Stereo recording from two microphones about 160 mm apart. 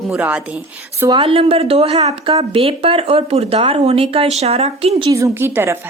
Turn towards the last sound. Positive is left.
turn(degrees=-15)  # may be behind; listen again after turning